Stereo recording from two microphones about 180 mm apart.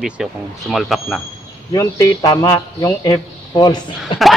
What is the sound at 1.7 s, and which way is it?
Speech, 15° left (ahead or behind).